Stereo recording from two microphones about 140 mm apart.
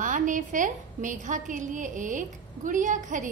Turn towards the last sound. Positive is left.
turn(degrees=-65)  # may be behind; listen again after turning